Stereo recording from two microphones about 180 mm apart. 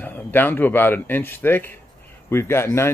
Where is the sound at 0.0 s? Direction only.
10° left (ahead or behind).